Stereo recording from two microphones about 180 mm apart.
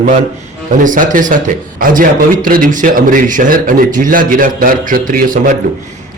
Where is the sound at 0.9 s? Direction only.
45° right (ahead or behind).